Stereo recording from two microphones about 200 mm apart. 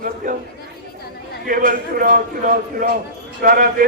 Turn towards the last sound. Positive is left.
turn(degrees=-45)  # may be behind; listen again after turning